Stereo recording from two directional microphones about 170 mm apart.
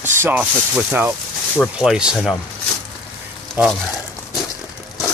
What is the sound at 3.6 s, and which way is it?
Speech, 10° right (ahead or behind).